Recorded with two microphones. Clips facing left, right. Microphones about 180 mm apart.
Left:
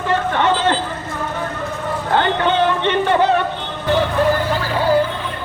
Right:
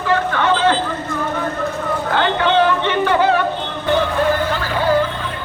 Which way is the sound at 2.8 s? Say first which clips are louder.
Even; 20° left (ahead or behind).